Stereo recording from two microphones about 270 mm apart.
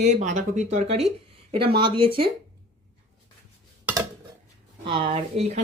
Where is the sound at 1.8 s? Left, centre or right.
Centre.